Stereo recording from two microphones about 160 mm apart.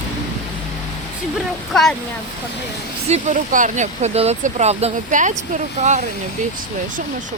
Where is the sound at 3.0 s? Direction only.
50° right (ahead or behind).